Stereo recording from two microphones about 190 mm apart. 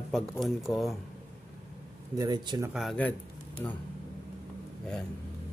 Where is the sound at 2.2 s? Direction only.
20° right (ahead or behind).